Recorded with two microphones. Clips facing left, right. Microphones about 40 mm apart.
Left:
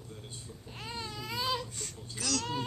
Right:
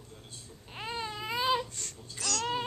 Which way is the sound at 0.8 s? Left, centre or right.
Right.